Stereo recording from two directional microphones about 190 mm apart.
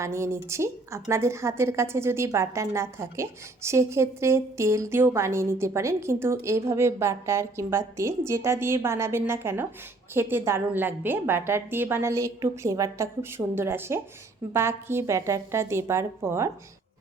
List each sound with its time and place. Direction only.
0.0 s a woman's voice: 15° right (ahead or behind)